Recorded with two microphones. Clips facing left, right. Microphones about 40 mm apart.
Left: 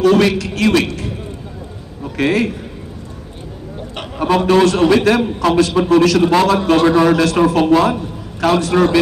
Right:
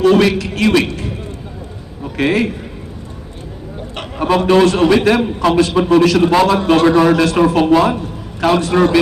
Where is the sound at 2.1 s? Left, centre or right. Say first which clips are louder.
Right 1 dB; right.